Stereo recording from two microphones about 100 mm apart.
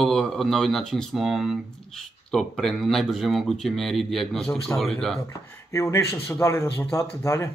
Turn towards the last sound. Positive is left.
turn(degrees=30)  # may be behind; listen again after turning